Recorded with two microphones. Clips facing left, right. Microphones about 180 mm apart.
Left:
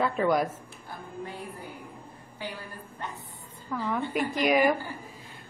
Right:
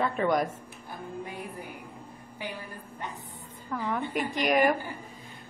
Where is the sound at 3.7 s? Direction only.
5° left (ahead or behind).